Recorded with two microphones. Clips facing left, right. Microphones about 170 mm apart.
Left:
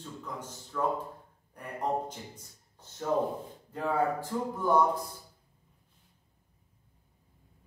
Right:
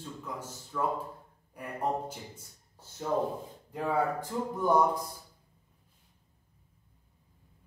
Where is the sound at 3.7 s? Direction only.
10° right (ahead or behind).